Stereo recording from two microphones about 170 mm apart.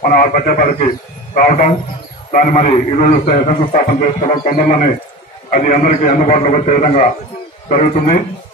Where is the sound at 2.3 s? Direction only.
45° left (ahead or behind).